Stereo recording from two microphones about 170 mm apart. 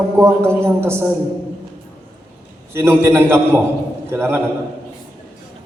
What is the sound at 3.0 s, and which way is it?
A man's voice, 15° right (ahead or behind).